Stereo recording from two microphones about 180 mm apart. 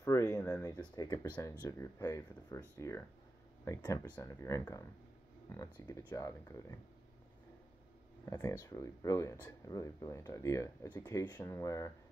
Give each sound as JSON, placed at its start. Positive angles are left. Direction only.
{"t": 0.0, "sound": "speech", "side_deg": 15}
{"t": 8.3, "sound": "speech", "side_deg": 15}